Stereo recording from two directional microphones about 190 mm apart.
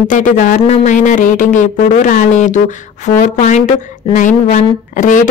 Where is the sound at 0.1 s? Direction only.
40° left (ahead or behind).